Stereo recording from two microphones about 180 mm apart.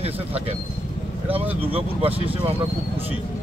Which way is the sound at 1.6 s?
30° right (ahead or behind).